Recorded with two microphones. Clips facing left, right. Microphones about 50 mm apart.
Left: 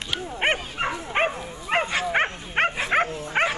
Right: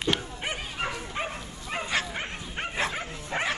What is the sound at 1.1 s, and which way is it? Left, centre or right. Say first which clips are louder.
Dog: left 9 dB; left.